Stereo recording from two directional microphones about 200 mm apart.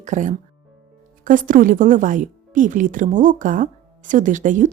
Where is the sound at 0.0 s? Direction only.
35° right (ahead or behind).